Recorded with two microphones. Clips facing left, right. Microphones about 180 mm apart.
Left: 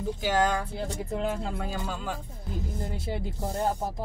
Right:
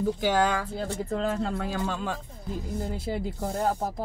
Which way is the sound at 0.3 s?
10° left (ahead or behind).